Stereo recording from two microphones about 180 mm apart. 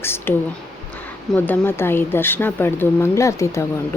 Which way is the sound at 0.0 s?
15° left (ahead or behind).